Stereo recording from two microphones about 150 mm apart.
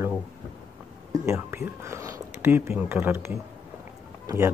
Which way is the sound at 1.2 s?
15° right (ahead or behind).